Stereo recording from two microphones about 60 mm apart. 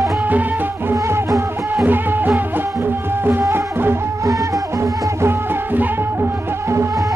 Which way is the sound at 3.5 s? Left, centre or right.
Right.